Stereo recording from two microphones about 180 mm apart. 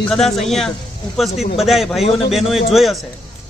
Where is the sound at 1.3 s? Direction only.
35° left (ahead or behind).